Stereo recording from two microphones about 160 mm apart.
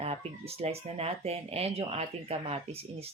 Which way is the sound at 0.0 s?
40° right (ahead or behind).